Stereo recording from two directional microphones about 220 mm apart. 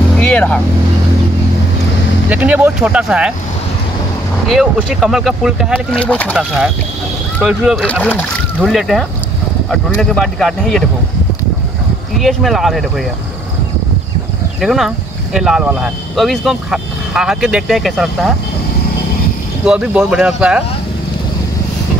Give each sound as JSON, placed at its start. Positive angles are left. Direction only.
{"t": 0.2, "sound": "vehicle", "side_deg": 5}
{"t": 2.2, "sound": "speech", "side_deg": -5}
{"t": 4.5, "sound": "speech", "side_deg": 0}
{"t": 12.2, "sound": "speech", "side_deg": 0}
{"t": 14.6, "sound": "speech", "side_deg": 0}
{"t": 19.6, "sound": "speech", "side_deg": -5}